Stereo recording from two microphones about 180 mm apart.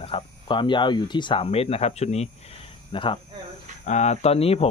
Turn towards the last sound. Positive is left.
turn(degrees=35)  # may be behind; listen again after turning